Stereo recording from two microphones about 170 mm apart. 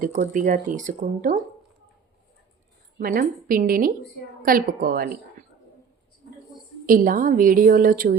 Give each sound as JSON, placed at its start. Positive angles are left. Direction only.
{"t": 0.0, "sound": "speech", "side_deg": -50}
{"t": 3.0, "sound": "a woman's voice", "side_deg": -55}
{"t": 6.8, "sound": "speech", "side_deg": -55}